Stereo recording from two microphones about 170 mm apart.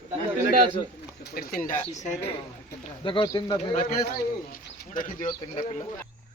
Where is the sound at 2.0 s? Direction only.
45° left (ahead or behind).